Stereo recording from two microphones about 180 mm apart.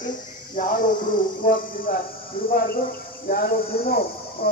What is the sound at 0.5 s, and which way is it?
Cricket, 45° left (ahead or behind).